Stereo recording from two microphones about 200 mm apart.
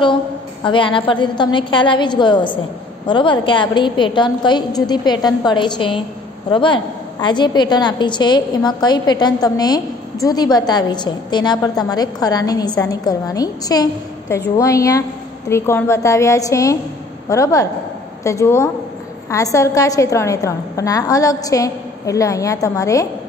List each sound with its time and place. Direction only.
0.7 s a woman's voice: 25° left (ahead or behind)